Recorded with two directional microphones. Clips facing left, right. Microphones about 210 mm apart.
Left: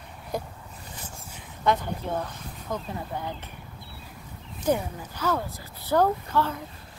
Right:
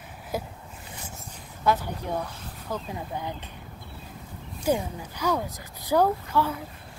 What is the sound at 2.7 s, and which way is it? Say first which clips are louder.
Speech: even; 15° right (ahead or behind).